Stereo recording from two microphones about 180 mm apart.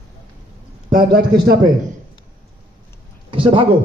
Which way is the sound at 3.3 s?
30° right (ahead or behind).